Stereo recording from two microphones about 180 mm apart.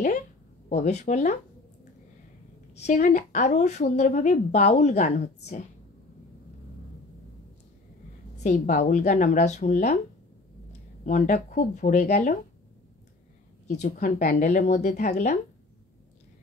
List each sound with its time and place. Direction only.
0.7 s a woman's voice: 40° left (ahead or behind)
2.8 s a woman's voice: 45° left (ahead or behind)
8.4 s a woman's voice: 45° left (ahead or behind)
11.1 s a woman's voice: 45° left (ahead or behind)
13.7 s a woman's voice: 40° left (ahead or behind)
13.9 s a woman's voice: 55° left (ahead or behind)